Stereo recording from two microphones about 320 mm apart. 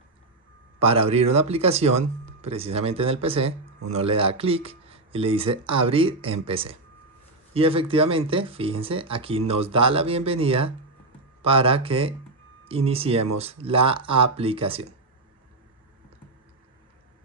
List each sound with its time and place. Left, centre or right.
0.7 s speech: centre